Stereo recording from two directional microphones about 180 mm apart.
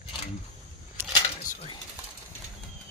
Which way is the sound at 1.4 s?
45° left (ahead or behind).